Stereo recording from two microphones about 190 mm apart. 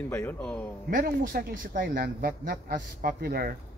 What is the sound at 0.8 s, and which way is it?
Speech, 50° right (ahead or behind).